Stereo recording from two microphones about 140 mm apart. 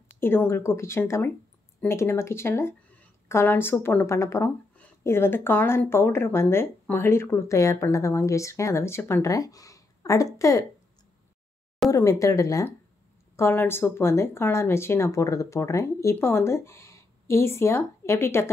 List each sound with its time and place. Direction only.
0.2 s speech: 15° left (ahead or behind)
11.9 s speech: 25° left (ahead or behind)